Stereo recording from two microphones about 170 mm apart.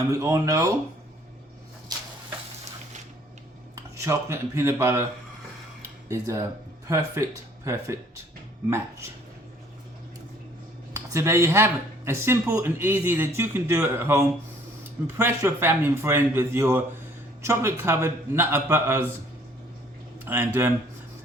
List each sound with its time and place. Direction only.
0.1 s speech: 20° right (ahead or behind)
3.9 s a man's voice: 15° right (ahead or behind)
6.1 s a man's voice: 15° right (ahead or behind)
11.1 s a man's voice: 15° right (ahead or behind)
20.1 s speech: 10° right (ahead or behind)